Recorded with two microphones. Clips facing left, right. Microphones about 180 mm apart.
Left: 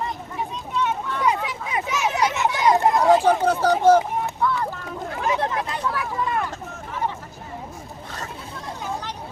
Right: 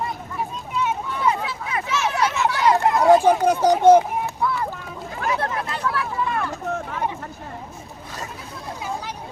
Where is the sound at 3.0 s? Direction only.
10° right (ahead or behind).